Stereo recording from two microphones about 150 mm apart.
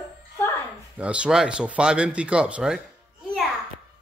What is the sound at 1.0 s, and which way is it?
Speech, 5° right (ahead or behind).